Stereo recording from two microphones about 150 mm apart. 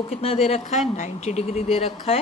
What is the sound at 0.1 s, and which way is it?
Speech, 40° left (ahead or behind).